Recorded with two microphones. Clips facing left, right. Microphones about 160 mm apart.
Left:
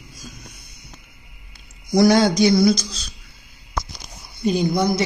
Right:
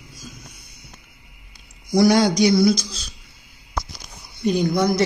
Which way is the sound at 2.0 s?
Centre (ahead or behind).